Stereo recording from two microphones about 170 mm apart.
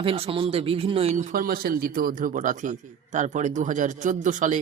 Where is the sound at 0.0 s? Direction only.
35° right (ahead or behind).